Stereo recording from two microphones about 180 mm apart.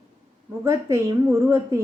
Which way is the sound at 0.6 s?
15° right (ahead or behind).